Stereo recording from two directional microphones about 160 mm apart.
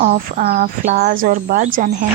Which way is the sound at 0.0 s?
60° right (ahead or behind).